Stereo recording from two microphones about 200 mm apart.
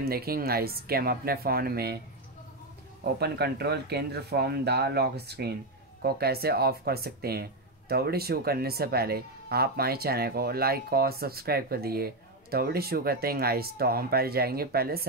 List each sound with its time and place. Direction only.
0.0 s speech: 50° right (ahead or behind)
3.0 s speech: 55° right (ahead or behind)